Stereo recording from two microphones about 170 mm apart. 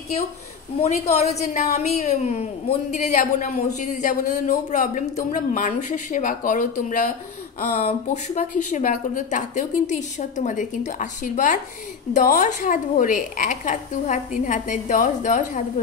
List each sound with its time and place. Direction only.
0.8 s a woman's voice: 40° left (ahead or behind)